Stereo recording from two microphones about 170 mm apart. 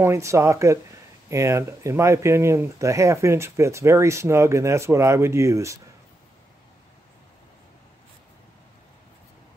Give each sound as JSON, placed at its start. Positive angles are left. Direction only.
{"t": 0.0, "sound": "speech", "side_deg": -15}